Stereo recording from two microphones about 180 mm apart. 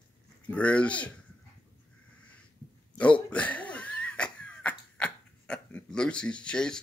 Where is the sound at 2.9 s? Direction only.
5° left (ahead or behind).